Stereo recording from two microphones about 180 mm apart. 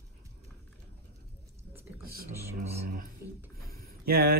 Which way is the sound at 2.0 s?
55° right (ahead or behind).